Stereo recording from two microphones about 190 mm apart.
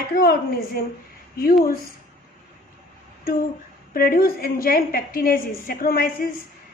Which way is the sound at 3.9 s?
50° left (ahead or behind).